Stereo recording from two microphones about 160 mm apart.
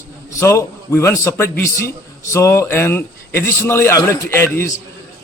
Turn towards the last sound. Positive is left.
turn(degrees=15)  # may be behind; listen again after turning